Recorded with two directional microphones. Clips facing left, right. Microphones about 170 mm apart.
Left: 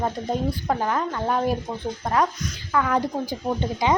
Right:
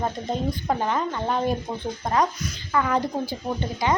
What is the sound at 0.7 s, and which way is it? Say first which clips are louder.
Speech: even; 5° left (ahead or behind).